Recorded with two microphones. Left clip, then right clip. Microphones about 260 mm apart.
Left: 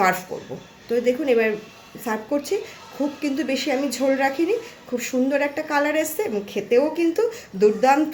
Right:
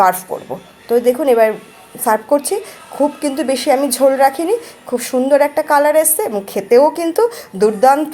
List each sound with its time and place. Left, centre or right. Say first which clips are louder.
0.9 s a woman's voice: right 8 dB; centre